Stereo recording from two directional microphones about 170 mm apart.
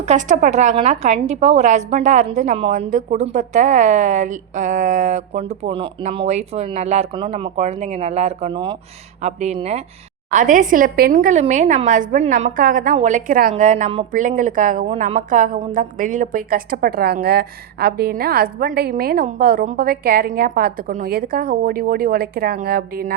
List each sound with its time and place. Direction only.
0.0 s a woman's voice: 45° right (ahead or behind)
9.2 s a woman's voice: 40° right (ahead or behind)
10.3 s a woman's voice: 50° right (ahead or behind)